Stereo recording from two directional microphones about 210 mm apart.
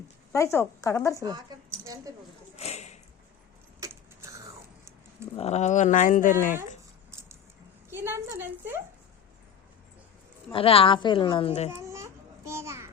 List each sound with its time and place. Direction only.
0.3 s speech: 15° left (ahead or behind)
1.2 s speech: 20° right (ahead or behind)
2.6 s a sound: 30° left (ahead or behind)
3.8 s vehicle: 15° right (ahead or behind)
5.4 s speech: 30° left (ahead or behind)
7.1 s a sound: 15° right (ahead or behind)
7.9 s a woman's voice: 10° right (ahead or behind)
10.5 s a woman's voice: 25° left (ahead or behind)
11.7 s babbling: 15° right (ahead or behind)